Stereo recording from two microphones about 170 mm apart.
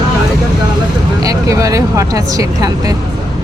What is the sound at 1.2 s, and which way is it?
Speech, 20° right (ahead or behind).